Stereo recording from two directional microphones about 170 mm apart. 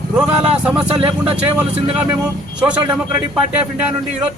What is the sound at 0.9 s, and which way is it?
Speech, 30° right (ahead or behind).